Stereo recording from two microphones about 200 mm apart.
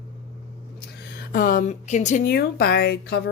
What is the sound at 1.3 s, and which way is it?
A woman's voice, 45° left (ahead or behind).